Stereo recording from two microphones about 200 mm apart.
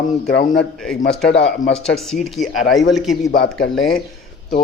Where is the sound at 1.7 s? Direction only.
Centre (ahead or behind).